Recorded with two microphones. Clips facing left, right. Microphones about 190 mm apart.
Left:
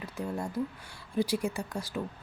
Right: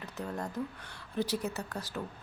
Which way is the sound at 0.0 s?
10° left (ahead or behind).